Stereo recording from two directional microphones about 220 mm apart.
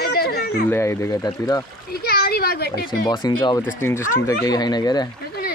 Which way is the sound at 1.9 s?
45° left (ahead or behind).